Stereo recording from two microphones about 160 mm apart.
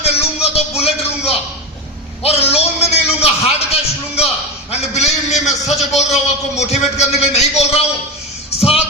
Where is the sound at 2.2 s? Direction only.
40° left (ahead or behind).